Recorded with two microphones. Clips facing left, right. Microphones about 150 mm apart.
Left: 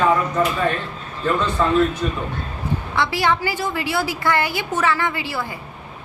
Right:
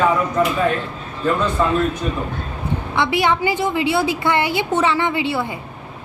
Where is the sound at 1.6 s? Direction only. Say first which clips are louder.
Even; 10° right (ahead or behind).